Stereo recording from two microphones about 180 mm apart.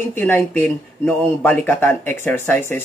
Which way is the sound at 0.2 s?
10° left (ahead or behind).